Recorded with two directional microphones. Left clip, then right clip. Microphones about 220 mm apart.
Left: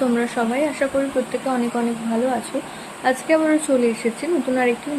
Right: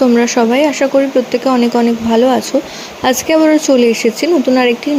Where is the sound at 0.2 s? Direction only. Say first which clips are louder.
Right 10 dB; 35° right (ahead or behind).